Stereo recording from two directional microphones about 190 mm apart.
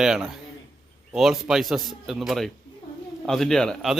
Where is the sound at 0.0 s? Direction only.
Centre (ahead or behind).